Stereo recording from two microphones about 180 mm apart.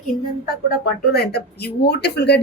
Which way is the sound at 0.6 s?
60° left (ahead or behind).